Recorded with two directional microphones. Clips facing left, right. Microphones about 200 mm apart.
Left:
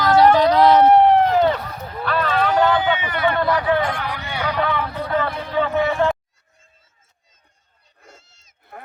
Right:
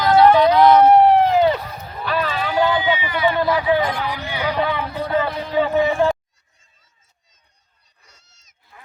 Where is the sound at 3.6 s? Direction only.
60° left (ahead or behind).